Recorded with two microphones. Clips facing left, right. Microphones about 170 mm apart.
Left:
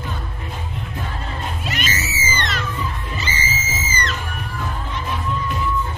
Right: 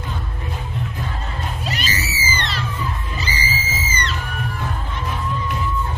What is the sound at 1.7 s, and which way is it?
Music, 35° right (ahead or behind).